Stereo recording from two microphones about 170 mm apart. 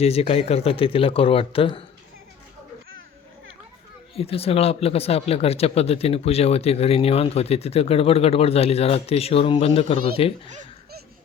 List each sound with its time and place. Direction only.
0.0 s speech: 35° left (ahead or behind)
4.2 s speech: 35° left (ahead or behind)